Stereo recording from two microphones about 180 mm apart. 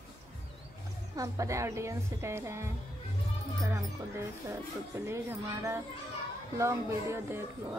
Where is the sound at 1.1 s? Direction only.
20° right (ahead or behind).